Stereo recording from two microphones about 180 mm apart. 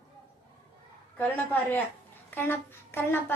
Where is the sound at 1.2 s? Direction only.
10° left (ahead or behind).